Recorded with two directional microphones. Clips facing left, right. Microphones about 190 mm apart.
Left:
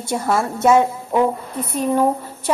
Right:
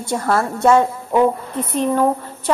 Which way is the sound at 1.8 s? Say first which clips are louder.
Even; 10° left (ahead or behind).